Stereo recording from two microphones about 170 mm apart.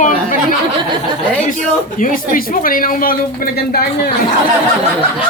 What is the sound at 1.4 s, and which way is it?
A man's voice, 50° left (ahead or behind).